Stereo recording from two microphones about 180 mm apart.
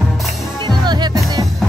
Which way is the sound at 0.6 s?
25° right (ahead or behind).